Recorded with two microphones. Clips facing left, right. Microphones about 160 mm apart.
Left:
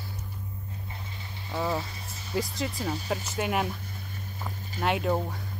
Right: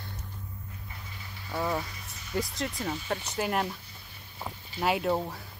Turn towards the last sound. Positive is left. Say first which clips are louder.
# even
turn(degrees=0)  # may be behind; listen again after turning